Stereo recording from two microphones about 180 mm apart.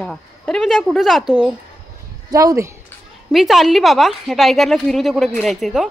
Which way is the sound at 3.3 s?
Centre (ahead or behind).